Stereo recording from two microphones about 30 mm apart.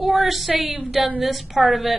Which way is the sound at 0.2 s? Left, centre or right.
Centre.